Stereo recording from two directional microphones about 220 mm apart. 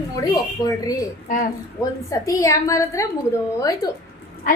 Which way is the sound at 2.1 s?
15° left (ahead or behind).